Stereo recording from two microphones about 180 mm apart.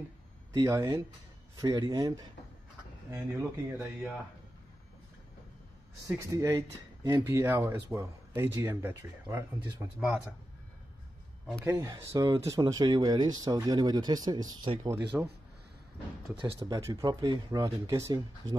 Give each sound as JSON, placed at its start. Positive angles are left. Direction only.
{"t": 0.6, "sound": "speech", "side_deg": -15}
{"t": 6.1, "sound": "speech", "side_deg": -20}
{"t": 11.6, "sound": "speech", "side_deg": -15}
{"t": 16.3, "sound": "speech", "side_deg": -25}